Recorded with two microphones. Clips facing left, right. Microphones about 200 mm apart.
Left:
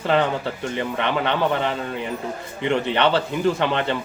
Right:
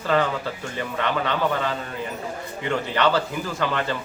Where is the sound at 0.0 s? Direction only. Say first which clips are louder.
Left 2 dB; 25° left (ahead or behind).